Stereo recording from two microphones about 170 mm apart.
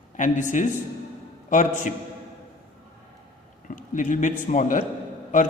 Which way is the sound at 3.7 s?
50° left (ahead or behind).